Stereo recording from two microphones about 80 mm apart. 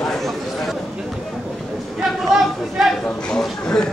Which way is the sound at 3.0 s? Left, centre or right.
Centre.